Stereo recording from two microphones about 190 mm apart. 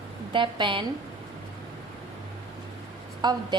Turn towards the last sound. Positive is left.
turn(degrees=-20)  # may be behind; listen again after turning